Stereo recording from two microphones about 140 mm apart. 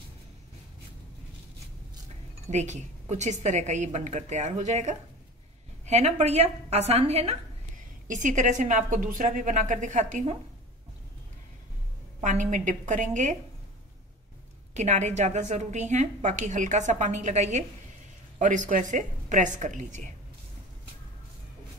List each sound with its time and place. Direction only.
2.5 s a woman's voice: 55° right (ahead or behind)
8.1 s a woman's voice: 65° right (ahead or behind)
12.2 s a woman's voice: 65° right (ahead or behind)
14.7 s a woman's voice: 55° right (ahead or behind)